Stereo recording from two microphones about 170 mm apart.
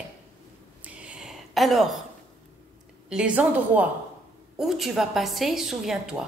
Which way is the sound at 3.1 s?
5° right (ahead or behind).